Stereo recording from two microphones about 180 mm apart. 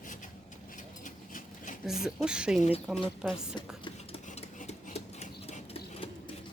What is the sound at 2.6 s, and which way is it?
Speech, 35° left (ahead or behind).